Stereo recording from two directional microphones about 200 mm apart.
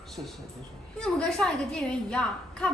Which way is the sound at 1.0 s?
5° left (ahead or behind).